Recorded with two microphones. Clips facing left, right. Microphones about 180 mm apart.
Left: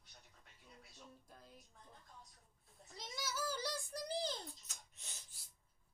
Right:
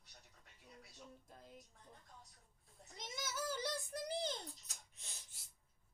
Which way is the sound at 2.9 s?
20° right (ahead or behind).